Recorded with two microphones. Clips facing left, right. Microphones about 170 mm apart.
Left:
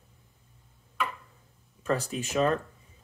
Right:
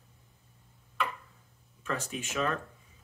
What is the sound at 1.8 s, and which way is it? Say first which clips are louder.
Speech: left 6 dB; 35° left (ahead or behind).